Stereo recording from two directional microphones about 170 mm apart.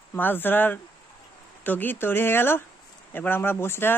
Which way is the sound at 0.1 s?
10° left (ahead or behind).